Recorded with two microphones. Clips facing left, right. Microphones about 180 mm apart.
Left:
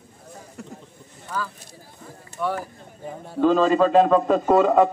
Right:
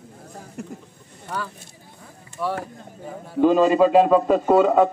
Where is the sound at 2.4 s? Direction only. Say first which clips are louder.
Even; 5° right (ahead or behind).